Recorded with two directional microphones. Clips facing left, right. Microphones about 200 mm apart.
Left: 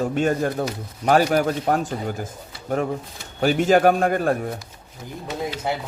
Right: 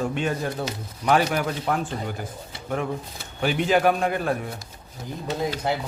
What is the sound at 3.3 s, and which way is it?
A man's voice, 45° left (ahead or behind).